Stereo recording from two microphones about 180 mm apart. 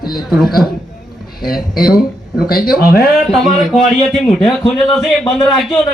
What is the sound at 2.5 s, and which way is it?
Speech, 55° left (ahead or behind).